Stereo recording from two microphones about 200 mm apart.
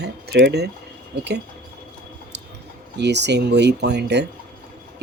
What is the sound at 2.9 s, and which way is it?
Speech, 60° right (ahead or behind).